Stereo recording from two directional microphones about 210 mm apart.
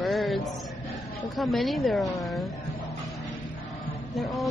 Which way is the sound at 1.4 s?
Centre (ahead or behind).